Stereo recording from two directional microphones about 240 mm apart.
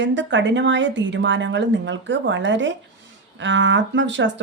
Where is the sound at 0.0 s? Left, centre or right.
Right.